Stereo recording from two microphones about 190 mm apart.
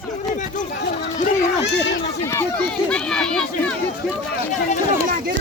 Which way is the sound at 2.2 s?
15° left (ahead or behind).